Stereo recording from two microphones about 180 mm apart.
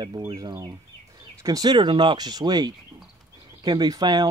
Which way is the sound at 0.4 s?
20° right (ahead or behind).